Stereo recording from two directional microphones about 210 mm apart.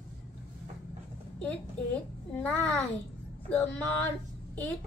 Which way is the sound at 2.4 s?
10° left (ahead or behind).